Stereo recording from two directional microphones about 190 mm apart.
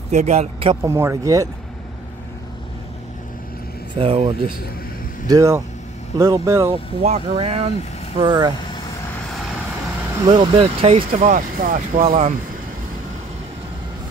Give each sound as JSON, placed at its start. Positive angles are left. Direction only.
{"t": 0.1, "sound": "speech", "side_deg": -35}
{"t": 0.8, "sound": "speech", "side_deg": -15}
{"t": 3.9, "sound": "speech", "side_deg": -30}
{"t": 5.3, "sound": "speech", "side_deg": -15}
{"t": 6.7, "sound": "speech", "side_deg": -35}
{"t": 10.3, "sound": "speech", "side_deg": -30}